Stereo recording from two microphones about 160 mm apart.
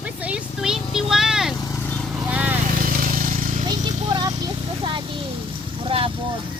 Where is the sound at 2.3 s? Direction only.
10° right (ahead or behind).